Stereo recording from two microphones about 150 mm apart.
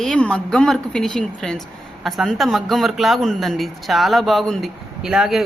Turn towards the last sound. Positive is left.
turn(degrees=0)  # may be behind; listen again after turning